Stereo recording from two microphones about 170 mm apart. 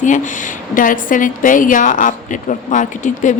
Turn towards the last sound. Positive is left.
turn(degrees=45)  # may be behind; listen again after turning